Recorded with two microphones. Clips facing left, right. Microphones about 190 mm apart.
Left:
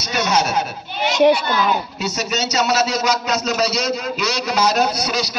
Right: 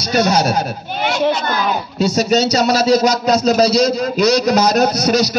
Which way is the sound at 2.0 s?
35° right (ahead or behind).